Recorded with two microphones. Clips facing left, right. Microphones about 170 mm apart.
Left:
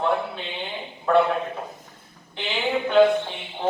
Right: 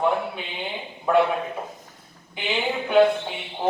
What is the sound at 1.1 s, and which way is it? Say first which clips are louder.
Speech: even; 10° right (ahead or behind).